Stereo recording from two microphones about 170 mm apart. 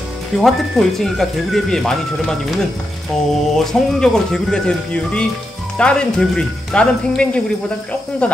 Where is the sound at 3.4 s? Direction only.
5° left (ahead or behind).